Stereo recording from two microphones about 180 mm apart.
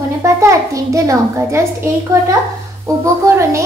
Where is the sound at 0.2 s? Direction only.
15° right (ahead or behind).